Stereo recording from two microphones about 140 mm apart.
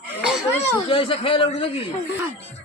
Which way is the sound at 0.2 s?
5° right (ahead or behind).